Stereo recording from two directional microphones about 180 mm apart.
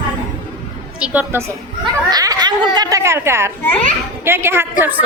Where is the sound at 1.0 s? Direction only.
5° right (ahead or behind).